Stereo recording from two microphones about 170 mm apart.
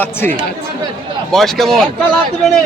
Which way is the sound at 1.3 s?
Centre (ahead or behind).